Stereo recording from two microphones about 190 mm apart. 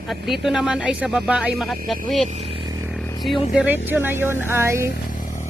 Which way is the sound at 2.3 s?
30° right (ahead or behind).